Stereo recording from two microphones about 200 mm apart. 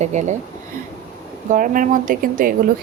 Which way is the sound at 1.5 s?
40° right (ahead or behind).